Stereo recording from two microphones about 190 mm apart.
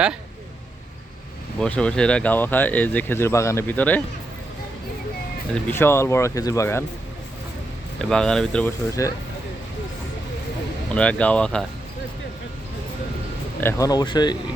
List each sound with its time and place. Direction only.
1.5 s speech: 5° left (ahead or behind)
5.7 s speech: 10° left (ahead or behind)
7.9 s speech: 5° left (ahead or behind)
10.9 s speech: 5° left (ahead or behind)
13.6 s speech: 15° left (ahead or behind)